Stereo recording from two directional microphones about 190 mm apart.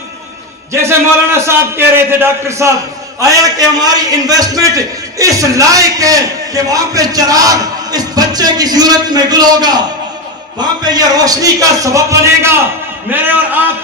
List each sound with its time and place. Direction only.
0.7 s a man's voice: 15° right (ahead or behind)